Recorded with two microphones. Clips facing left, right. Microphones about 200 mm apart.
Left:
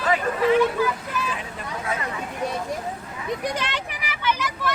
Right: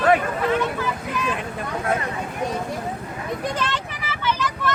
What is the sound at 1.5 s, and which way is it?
Speech, 55° right (ahead or behind).